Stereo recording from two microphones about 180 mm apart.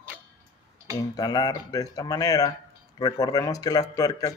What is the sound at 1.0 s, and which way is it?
Speech, 20° left (ahead or behind).